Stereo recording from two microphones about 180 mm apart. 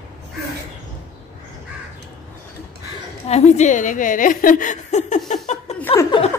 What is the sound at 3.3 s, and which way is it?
A woman's voice, 35° left (ahead or behind).